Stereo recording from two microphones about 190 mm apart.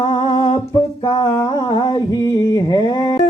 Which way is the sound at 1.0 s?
25° left (ahead or behind).